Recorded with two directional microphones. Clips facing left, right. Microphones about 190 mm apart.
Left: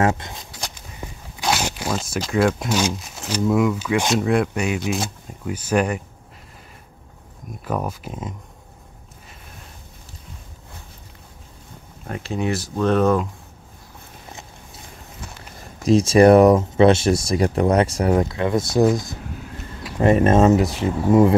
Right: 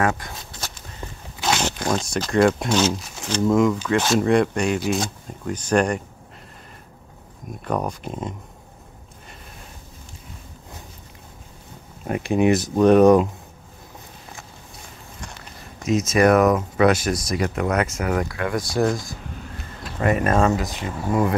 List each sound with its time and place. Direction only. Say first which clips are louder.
0.0 s walk: left 2 dB; 20° left (ahead or behind); by 2.8 s 5° left (ahead or behind)
3.2 s speech: right 1 dB; 5° left (ahead or behind)
7.6 s speech: right 1 dB; 5° left (ahead or behind)
12.1 s speech: right 6 dB; 15° right (ahead or behind)
15.9 s speech: left 5 dB; 30° left (ahead or behind)
20.0 s speech: left 4 dB; 25° left (ahead or behind)